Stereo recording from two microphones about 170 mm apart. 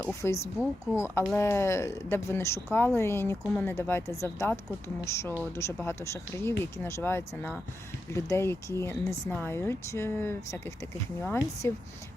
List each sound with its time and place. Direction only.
0.0 s speech: 15° left (ahead or behind)